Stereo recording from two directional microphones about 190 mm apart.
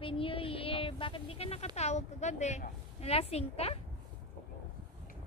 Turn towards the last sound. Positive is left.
turn(degrees=30)  # may be behind; listen again after turning